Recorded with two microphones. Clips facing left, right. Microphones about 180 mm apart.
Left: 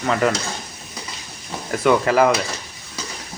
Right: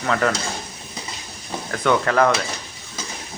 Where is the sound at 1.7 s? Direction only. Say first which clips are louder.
Left 3 dB; 10° left (ahead or behind).